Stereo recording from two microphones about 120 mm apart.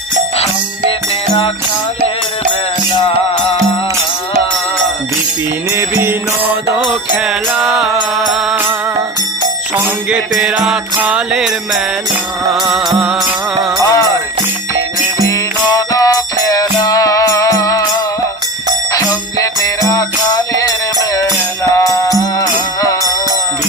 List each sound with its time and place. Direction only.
3.0 s music: 55° left (ahead or behind)
5.7 s mantra: 20° right (ahead or behind)
7.6 s mantra: 5° right (ahead or behind)
10.3 s mantra: 5° right (ahead or behind)
12.5 s music: 5° right (ahead or behind)
13.8 s jingle bell: 30° left (ahead or behind)
15.2 s music: 30° left (ahead or behind)